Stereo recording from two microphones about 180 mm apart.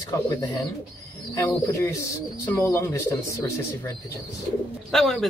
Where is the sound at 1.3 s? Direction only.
15° left (ahead or behind).